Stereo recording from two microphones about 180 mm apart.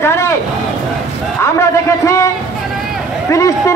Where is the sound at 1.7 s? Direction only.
15° left (ahead or behind).